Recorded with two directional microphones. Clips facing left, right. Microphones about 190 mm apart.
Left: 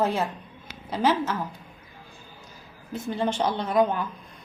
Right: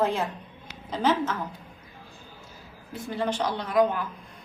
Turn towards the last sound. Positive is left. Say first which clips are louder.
# left 2 dB
turn(degrees=25)  # may be behind; listen again after turning